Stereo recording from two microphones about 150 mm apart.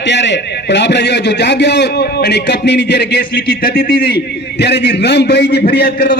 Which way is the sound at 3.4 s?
80° left.